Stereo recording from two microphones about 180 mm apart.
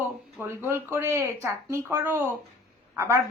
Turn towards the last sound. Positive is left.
turn(degrees=-15)  # may be behind; listen again after turning